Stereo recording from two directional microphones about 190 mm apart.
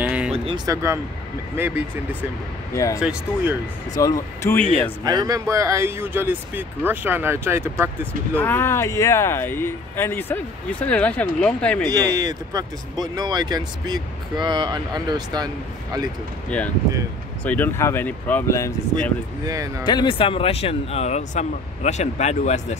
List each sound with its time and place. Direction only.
0.0 s music: 5° right (ahead or behind)
0.7 s speech: 15° right (ahead or behind)
2.7 s speech: 15° left (ahead or behind)
3.0 s speech: 5° right (ahead or behind)
3.9 s speech: 20° left (ahead or behind)
5.0 s speech: 20° right (ahead or behind)
8.4 s speech: 10° left (ahead or behind)
11.9 s speech: 20° right (ahead or behind)
16.4 s speech: 5° left (ahead or behind)
19.4 s speech: 20° right (ahead or behind)
19.8 s speech: 25° left (ahead or behind)